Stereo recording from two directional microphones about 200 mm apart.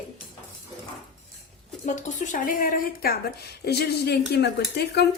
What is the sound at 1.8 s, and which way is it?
A woman's voice, 35° left (ahead or behind).